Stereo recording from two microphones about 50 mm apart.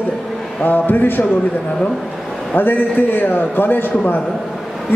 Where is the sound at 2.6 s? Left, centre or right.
Left.